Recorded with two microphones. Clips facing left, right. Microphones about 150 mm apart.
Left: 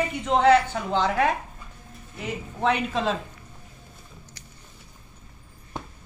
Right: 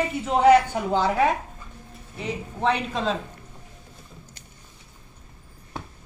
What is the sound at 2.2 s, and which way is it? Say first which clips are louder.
Speech: right 1 dB; 5° left (ahead or behind).